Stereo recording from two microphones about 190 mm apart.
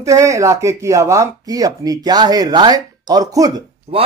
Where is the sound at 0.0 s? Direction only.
15° right (ahead or behind).